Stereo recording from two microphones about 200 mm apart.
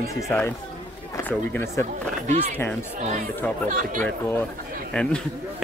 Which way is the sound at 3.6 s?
40° right (ahead or behind).